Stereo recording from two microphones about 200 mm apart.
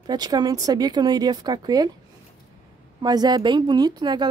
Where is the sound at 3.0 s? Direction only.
20° right (ahead or behind).